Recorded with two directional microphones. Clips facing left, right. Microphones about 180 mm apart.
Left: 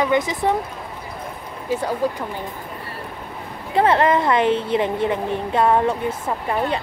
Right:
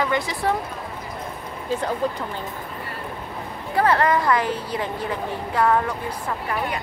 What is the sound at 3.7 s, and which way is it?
A woman's voice, 25° left (ahead or behind).